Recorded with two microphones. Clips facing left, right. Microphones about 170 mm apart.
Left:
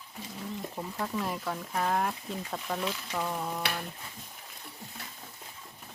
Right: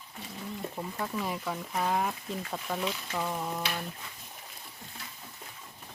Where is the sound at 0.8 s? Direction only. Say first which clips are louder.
Left 1 dB; centre (ahead or behind).